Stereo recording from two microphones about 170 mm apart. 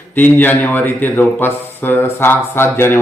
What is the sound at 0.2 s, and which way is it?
Speech, 10° left (ahead or behind).